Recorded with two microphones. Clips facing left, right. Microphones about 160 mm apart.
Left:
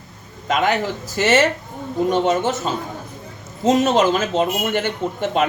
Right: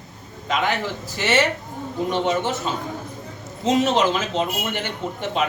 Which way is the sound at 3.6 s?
45° left (ahead or behind).